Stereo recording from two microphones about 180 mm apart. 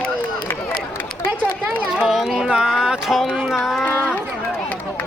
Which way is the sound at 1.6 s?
5° right (ahead or behind).